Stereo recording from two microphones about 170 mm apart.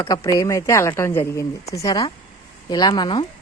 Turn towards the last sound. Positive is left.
turn(degrees=30)  # may be behind; listen again after turning